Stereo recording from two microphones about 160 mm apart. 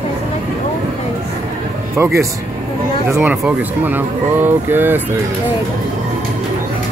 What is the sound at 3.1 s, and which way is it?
Speech, 15° right (ahead or behind).